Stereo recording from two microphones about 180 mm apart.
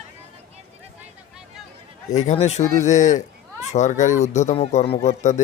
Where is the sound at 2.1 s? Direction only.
40° left (ahead or behind).